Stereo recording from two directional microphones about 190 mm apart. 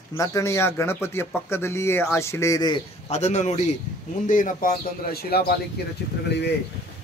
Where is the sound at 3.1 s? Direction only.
35° left (ahead or behind); by 5.5 s 55° left (ahead or behind).